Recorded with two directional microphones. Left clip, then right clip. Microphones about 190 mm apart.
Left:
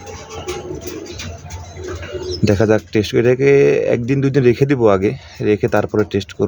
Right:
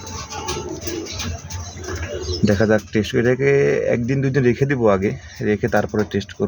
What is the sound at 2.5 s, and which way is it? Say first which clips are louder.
Speech: left 3 dB; 25° left (ahead or behind).